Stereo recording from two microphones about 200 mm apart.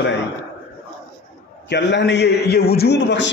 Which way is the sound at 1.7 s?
60° left (ahead or behind).